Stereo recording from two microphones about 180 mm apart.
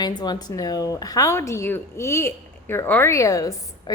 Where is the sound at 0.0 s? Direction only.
25° left (ahead or behind).